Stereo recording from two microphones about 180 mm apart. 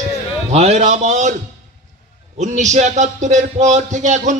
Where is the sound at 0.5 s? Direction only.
35° right (ahead or behind).